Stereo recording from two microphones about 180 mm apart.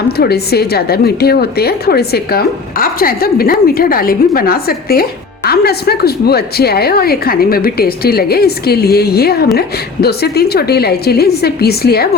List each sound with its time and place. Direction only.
0.2 s a woman's voice: 60° left (ahead or behind)